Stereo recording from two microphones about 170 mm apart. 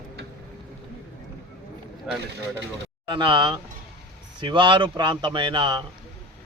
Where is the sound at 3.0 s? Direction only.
30° right (ahead or behind).